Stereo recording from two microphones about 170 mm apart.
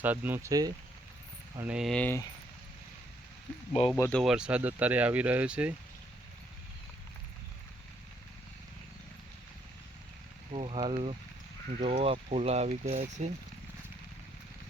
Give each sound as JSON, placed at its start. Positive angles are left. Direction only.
{"t": 0.0, "sound": "speech", "side_deg": -10}
{"t": 1.6, "sound": "speech", "side_deg": -5}
{"t": 3.9, "sound": "speech", "side_deg": 15}
{"t": 4.2, "sound": "speech", "side_deg": -5}
{"t": 10.5, "sound": "speech", "side_deg": -35}